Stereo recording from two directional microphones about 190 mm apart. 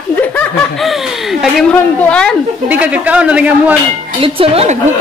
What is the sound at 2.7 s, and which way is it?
A man's voice, 10° right (ahead or behind).